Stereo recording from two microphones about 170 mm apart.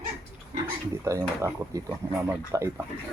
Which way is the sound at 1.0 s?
15° right (ahead or behind).